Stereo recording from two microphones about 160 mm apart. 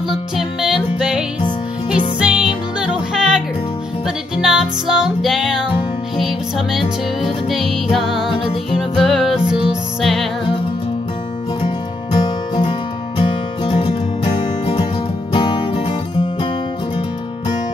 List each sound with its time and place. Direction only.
0.1 s music: 5° right (ahead or behind)
11.6 s music: 30° left (ahead or behind)